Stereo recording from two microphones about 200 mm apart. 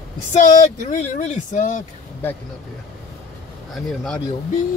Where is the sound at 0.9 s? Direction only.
35° left (ahead or behind).